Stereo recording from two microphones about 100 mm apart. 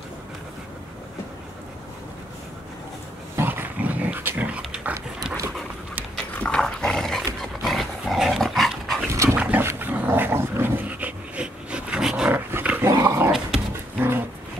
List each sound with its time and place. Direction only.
3.3 s dog: 20° right (ahead or behind)
6.3 s dog: 10° left (ahead or behind)
9.1 s dog: 30° right (ahead or behind)
9.4 s dog: 20° right (ahead or behind)
12.3 s dog: 20° right (ahead or behind)